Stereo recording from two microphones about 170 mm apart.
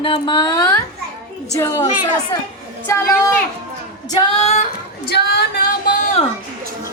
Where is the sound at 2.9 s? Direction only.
15° left (ahead or behind).